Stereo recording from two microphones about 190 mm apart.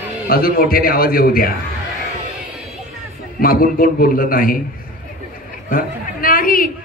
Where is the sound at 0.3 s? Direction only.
50° left (ahead or behind).